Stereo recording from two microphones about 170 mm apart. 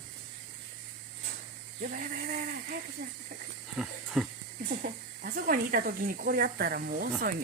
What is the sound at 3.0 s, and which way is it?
Speech, 60° right (ahead or behind).